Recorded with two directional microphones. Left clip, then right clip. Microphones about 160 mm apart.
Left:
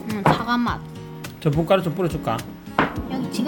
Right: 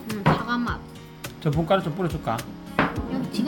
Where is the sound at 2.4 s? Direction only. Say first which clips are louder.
Left 3 dB; centre (ahead or behind).